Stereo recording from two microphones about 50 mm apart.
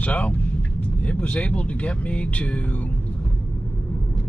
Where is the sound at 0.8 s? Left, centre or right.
Left.